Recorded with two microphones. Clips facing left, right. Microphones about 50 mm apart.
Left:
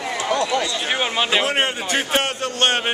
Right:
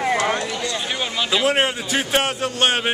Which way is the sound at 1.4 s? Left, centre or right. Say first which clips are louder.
Right 2 dB; centre.